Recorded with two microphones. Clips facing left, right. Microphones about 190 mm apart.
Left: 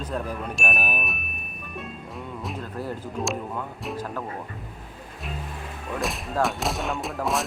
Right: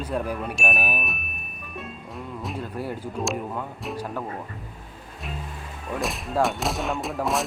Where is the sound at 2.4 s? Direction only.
Centre (ahead or behind).